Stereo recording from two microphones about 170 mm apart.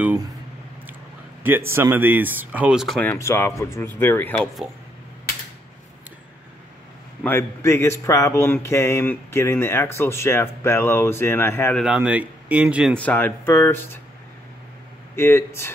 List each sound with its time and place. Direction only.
1.4 s speech: 15° right (ahead or behind)
3.0 s speech: 15° left (ahead or behind)
7.2 s speech: 15° left (ahead or behind)
11.7 s speech: 5° right (ahead or behind)
12.9 s speech: 10° left (ahead or behind)
15.1 s speech: 15° left (ahead or behind)